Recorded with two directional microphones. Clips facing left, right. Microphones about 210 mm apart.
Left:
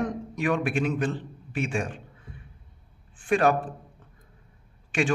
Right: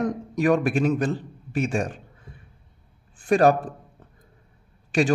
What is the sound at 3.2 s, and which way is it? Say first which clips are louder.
Speech: right 4 dB; 40° right (ahead or behind).